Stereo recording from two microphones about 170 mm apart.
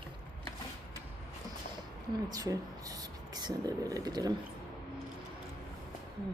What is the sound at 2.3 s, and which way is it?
Speech, 20° right (ahead or behind).